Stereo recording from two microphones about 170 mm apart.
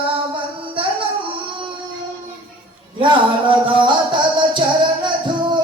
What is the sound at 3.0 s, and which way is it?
Music, 30° right (ahead or behind).